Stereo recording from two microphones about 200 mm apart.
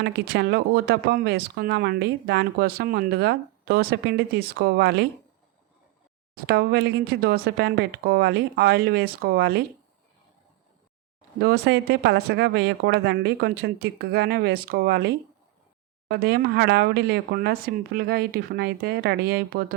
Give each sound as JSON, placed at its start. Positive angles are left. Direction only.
{"t": 0.0, "sound": "speech", "side_deg": -55}
{"t": 6.3, "sound": "speech", "side_deg": -50}
{"t": 11.3, "sound": "speech", "side_deg": -55}